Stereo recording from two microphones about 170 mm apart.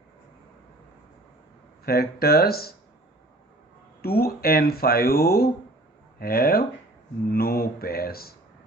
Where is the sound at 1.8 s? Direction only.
65° left (ahead or behind).